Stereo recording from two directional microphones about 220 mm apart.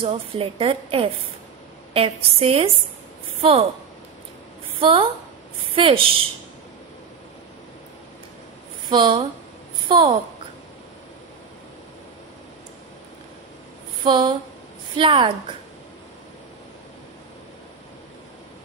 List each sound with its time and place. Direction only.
0.0 s a woman's voice: 25° right (ahead or behind)
4.7 s a woman's voice: 25° right (ahead or behind)
8.8 s a woman's voice: 20° right (ahead or behind)
14.0 s a woman's voice: 20° right (ahead or behind)